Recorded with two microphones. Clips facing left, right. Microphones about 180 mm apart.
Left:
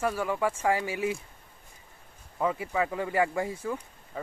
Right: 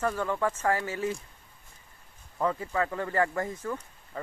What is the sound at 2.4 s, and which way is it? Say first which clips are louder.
Speech: even; 10° left (ahead or behind).